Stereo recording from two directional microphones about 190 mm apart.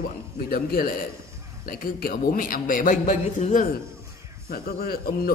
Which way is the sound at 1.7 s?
50° left (ahead or behind).